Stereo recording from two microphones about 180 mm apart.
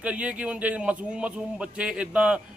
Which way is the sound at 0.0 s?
5° right (ahead or behind).